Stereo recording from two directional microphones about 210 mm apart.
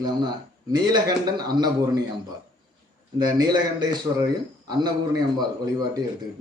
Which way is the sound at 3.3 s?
20° right (ahead or behind).